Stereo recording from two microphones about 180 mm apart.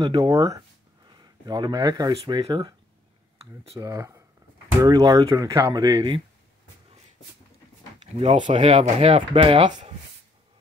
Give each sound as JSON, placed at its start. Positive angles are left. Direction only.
{"t": 0.0, "sound": "speech", "side_deg": -20}
{"t": 3.8, "sound": "speech", "side_deg": -20}
{"t": 8.0, "sound": "speech", "side_deg": -35}